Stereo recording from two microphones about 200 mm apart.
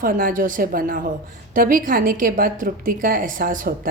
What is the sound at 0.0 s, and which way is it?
A woman's voice, 45° right (ahead or behind).